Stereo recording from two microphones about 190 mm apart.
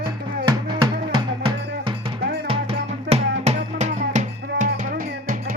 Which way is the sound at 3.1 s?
35° right (ahead or behind).